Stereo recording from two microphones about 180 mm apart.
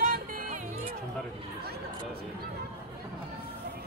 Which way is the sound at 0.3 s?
45° right (ahead or behind).